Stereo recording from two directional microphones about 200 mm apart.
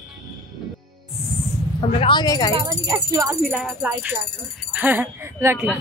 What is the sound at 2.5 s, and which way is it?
Speech, 20° right (ahead or behind).